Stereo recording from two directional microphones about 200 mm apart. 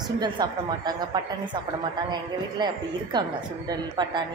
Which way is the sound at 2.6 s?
20° right (ahead or behind).